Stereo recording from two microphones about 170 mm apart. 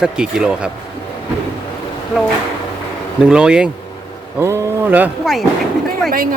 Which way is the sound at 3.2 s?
5° right (ahead or behind).